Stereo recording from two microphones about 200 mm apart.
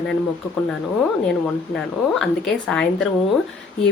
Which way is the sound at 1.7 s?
5° left (ahead or behind).